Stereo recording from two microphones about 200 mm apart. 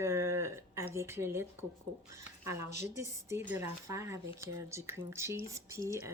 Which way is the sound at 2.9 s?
15° right (ahead or behind).